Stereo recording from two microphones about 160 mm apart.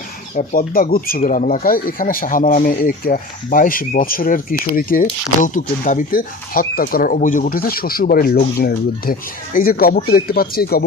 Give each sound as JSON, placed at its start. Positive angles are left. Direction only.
{"t": 0.3, "sound": "speech", "side_deg": 60}
{"t": 1.2, "sound": "speech", "side_deg": 50}